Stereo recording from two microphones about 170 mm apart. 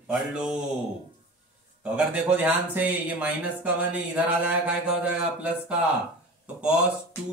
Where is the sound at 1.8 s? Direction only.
5° right (ahead or behind).